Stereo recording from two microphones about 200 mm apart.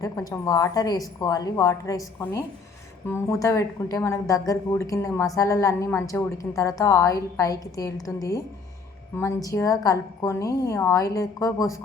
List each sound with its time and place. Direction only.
0.0 s a woman's voice: 20° left (ahead or behind)